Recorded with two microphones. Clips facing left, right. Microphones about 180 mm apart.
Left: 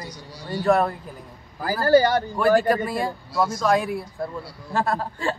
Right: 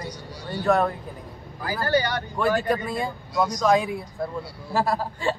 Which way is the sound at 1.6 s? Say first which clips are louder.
Left 6 dB; 40° left (ahead or behind).